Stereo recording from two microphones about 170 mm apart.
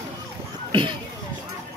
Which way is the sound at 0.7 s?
30° right (ahead or behind).